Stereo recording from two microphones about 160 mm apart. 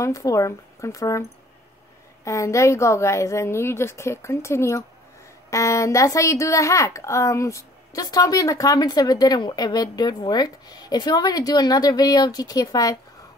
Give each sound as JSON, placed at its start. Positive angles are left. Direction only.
{"t": 0.0, "sound": "speech", "side_deg": 20}
{"t": 2.2, "sound": "a woman's voice", "side_deg": 20}